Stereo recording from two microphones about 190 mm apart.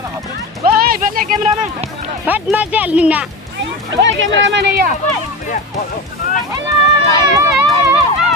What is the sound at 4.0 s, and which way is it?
Speech, 75° right (ahead or behind).